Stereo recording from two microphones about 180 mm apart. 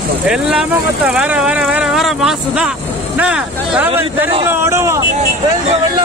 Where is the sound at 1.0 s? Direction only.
5° right (ahead or behind).